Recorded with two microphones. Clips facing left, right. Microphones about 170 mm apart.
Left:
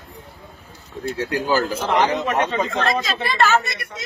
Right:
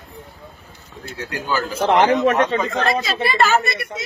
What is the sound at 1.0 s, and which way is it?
Speech, 30° left (ahead or behind).